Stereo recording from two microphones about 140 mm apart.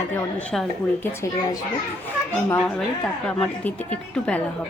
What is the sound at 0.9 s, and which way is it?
Speech, 20° left (ahead or behind).